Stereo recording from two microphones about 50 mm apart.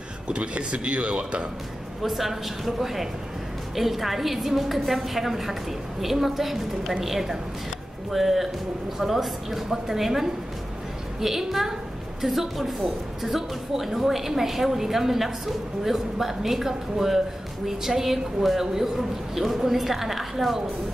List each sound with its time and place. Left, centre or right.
0.3 s speech: right
2.0 s a woman's voice: centre